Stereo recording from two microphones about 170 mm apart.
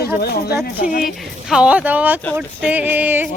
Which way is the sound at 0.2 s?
65° left (ahead or behind).